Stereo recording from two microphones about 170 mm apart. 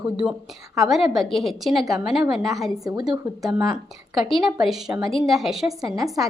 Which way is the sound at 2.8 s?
20° right (ahead or behind).